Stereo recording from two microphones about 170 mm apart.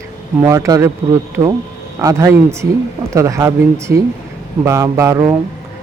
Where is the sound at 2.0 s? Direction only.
20° right (ahead or behind).